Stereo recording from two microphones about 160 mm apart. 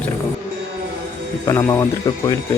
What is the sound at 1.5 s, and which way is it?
Speech, 15° left (ahead or behind).